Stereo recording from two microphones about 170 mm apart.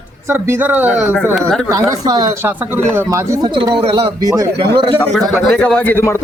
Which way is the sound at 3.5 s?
30° right (ahead or behind).